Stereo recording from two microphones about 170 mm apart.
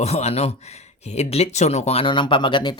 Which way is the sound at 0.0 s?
40° left (ahead or behind).